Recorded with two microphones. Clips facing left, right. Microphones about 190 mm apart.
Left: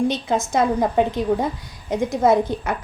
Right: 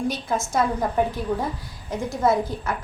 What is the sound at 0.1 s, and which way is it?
A woman's voice, 20° left (ahead or behind).